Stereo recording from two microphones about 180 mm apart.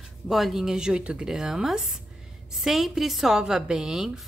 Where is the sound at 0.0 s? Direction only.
Centre (ahead or behind).